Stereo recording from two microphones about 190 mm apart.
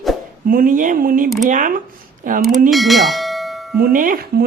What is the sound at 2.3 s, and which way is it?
Speech, 45° right (ahead or behind).